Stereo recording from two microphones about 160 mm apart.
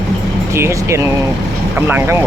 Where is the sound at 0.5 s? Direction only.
15° right (ahead or behind).